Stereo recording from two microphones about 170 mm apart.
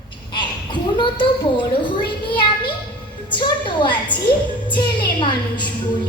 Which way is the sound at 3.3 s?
25° left (ahead or behind).